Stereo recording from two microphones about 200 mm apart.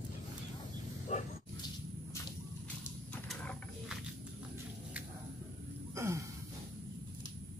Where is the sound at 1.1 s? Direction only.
35° left (ahead or behind).